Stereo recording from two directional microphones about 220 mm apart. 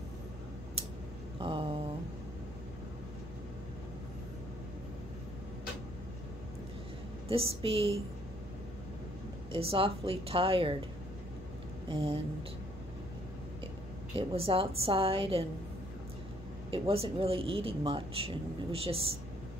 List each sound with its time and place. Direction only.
1.4 s a sound: 25° right (ahead or behind)
7.2 s speech: 25° right (ahead or behind)
9.5 s speech: 25° right (ahead or behind)
11.9 s speech: 25° right (ahead or behind)
14.1 s speech: 25° right (ahead or behind)
16.7 s speech: 25° right (ahead or behind)